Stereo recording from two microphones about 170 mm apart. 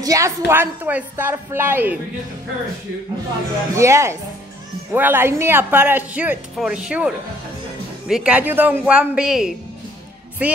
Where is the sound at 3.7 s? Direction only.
15° right (ahead or behind).